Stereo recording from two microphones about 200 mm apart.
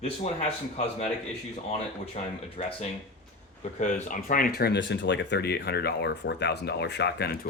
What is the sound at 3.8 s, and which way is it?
Speech, 40° left (ahead or behind).